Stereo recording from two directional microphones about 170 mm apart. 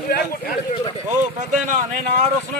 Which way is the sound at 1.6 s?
45° right (ahead or behind).